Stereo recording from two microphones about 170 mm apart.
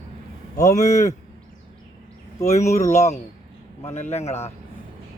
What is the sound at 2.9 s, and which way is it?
A man's voice, 40° left (ahead or behind).